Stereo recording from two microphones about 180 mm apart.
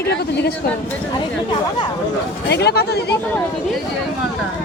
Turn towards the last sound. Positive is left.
turn(degrees=65)  # may be behind; listen again after turning